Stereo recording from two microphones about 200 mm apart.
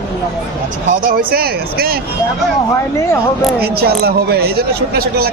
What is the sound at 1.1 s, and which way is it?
Speech, 50° right (ahead or behind).